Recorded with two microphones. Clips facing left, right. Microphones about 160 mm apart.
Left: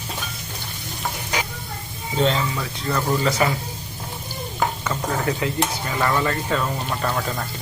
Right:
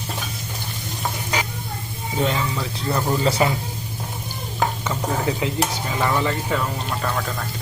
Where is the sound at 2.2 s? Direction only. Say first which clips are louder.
Left 2 dB; 10° right (ahead or behind).